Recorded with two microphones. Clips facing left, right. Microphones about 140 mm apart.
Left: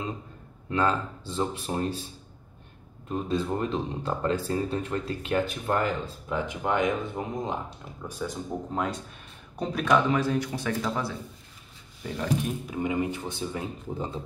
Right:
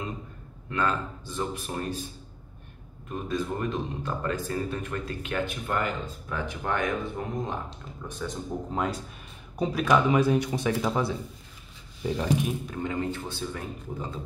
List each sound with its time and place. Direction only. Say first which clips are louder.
0.7 s speech: left 2 dB; 25° left (ahead or behind)
3.1 s speech: left 2 dB; 30° left (ahead or behind)
6.2 s speech: left 3 dB; 20° left (ahead or behind)
8.1 s speech: left 1 dB; 5° left (ahead or behind); by 11.1 s 20° right (ahead or behind)
12.4 s speech: left 2 dB; 10° left (ahead or behind)